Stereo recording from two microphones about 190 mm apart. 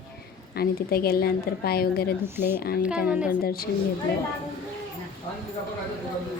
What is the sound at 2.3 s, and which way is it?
Speech, 10° right (ahead or behind).